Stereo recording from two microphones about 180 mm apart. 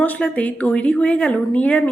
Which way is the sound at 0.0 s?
10° left (ahead or behind).